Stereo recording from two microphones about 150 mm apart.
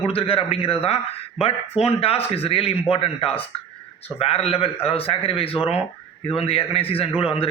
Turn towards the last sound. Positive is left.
turn(degrees=35)  # may be behind; listen again after turning